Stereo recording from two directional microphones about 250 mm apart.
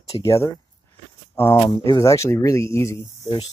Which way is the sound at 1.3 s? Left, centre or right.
Centre.